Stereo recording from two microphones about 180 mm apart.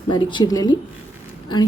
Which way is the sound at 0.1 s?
25° left (ahead or behind).